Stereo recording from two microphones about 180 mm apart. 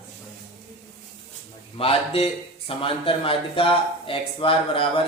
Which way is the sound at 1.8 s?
30° left (ahead or behind).